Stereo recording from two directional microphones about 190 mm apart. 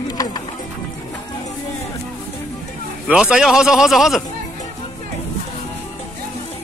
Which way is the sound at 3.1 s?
5° right (ahead or behind).